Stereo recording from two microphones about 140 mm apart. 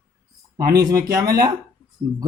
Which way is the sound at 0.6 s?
25° right (ahead or behind).